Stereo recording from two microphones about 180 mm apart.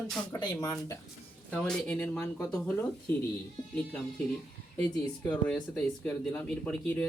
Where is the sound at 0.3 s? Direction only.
20° left (ahead or behind).